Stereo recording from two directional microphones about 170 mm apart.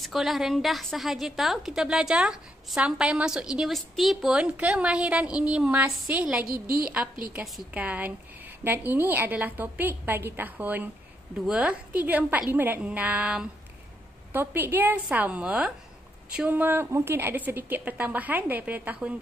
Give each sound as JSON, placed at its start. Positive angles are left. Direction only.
{"t": 0.0, "sound": "a woman's voice", "side_deg": 0}
{"t": 6.4, "sound": "a woman's voice", "side_deg": -60}
{"t": 7.3, "sound": "a woman's voice", "side_deg": -5}